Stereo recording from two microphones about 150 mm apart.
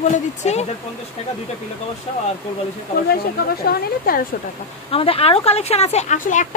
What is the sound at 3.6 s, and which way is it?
Speech, 80° left.